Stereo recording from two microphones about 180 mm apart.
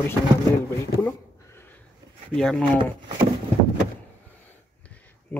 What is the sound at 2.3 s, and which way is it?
Speech, 5° left (ahead or behind).